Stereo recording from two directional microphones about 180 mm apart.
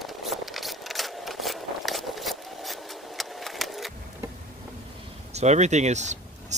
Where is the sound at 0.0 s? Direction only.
Centre (ahead or behind).